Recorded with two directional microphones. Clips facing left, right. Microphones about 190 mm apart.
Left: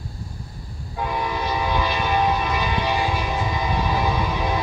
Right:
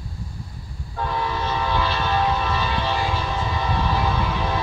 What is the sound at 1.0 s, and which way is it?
Train, 15° left (ahead or behind).